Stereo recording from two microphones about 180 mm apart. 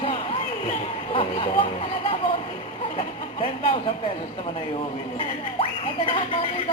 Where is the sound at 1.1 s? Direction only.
30° left (ahead or behind).